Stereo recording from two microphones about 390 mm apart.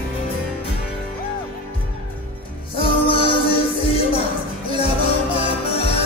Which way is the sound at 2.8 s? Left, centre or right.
Centre.